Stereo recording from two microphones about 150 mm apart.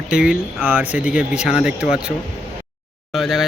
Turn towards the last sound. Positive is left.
turn(degrees=0)  # may be behind; listen again after turning